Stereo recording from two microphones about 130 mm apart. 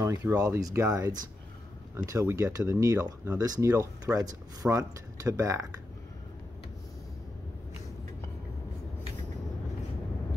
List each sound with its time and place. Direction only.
0.0 s speech: 20° right (ahead or behind)